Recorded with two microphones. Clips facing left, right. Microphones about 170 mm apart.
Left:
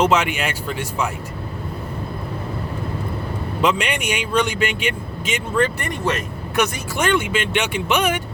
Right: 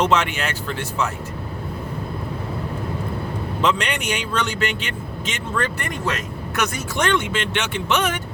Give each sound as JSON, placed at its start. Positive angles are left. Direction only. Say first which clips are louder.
{"t": 0.0, "sound": "speech", "louder": "left 2 dB", "side_deg": 10}
{"t": 3.6, "sound": "speech", "louder": "left 2 dB", "side_deg": 10}